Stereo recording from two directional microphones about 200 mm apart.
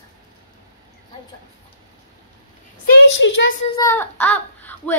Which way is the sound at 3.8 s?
10° left (ahead or behind).